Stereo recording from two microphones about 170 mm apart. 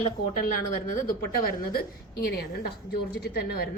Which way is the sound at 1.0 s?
60° left (ahead or behind).